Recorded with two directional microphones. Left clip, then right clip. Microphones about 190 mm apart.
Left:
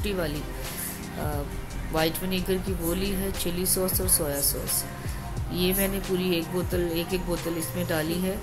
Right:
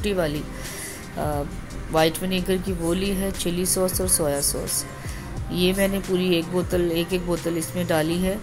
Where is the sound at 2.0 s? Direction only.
15° right (ahead or behind).